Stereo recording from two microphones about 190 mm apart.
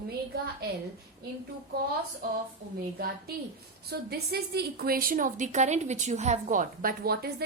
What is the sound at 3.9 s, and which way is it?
A woman's voice, 60° right (ahead or behind).